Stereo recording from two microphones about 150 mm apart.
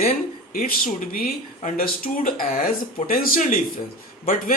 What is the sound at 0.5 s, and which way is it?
Speech, 75° left (ahead or behind).